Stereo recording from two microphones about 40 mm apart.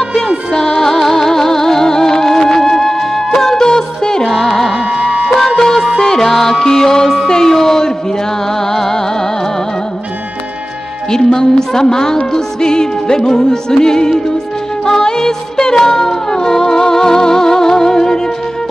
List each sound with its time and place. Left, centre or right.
0.0 s music: centre
4.8 s music: right
5.9 s music: centre
11.1 s music: centre